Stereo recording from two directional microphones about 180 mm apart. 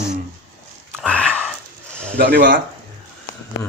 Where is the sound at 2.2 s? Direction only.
65° right (ahead or behind).